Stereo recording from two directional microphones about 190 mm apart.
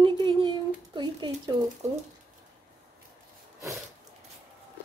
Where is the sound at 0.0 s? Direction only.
25° right (ahead or behind).